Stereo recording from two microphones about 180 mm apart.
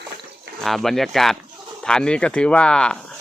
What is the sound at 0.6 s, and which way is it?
Speech, centre (ahead or behind).